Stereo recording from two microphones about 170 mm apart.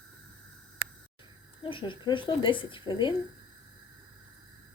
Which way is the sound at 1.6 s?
30° left (ahead or behind).